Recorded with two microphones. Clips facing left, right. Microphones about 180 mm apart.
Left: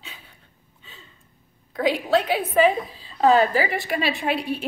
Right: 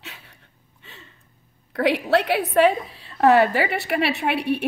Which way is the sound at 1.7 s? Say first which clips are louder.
Right 1 dB; 70° right (ahead or behind).